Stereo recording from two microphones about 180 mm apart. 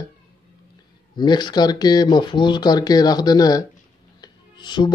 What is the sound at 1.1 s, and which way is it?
Speech, 25° left (ahead or behind).